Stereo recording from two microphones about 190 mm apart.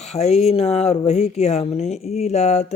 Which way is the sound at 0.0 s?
35° left (ahead or behind).